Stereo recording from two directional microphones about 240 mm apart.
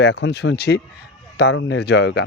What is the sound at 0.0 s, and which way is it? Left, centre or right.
Speech, left.